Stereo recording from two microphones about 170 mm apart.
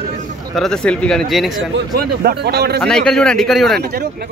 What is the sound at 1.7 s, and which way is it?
Speech, 75° right (ahead or behind).